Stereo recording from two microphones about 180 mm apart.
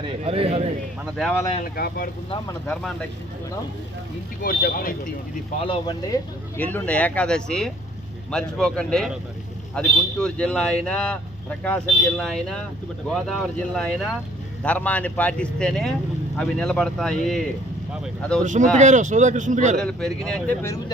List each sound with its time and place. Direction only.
0.2 s speech: 35° right (ahead or behind)
1.1 s speech: centre (ahead or behind)
1.6 s speech: 55° left (ahead or behind)
4.4 s speech: 55° left (ahead or behind)
5.5 s speech: 25° left (ahead or behind)
6.6 s a man's voice: 10° left (ahead or behind)
18.4 s speech: 45° right (ahead or behind)
19.7 s speech: 5° left (ahead or behind)